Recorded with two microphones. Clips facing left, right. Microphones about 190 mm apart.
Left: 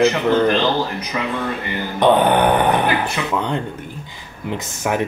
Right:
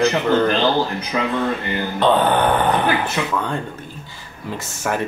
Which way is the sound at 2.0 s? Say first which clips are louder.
Left 3 dB; 15° left (ahead or behind).